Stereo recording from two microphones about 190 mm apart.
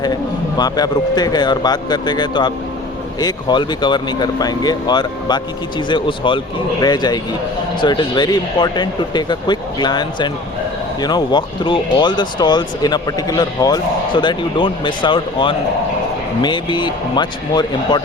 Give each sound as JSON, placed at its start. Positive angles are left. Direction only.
{"t": 0.0, "sound": "speech", "side_deg": 20}